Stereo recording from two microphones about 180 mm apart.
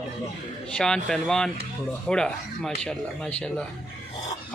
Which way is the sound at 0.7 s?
5° left (ahead or behind).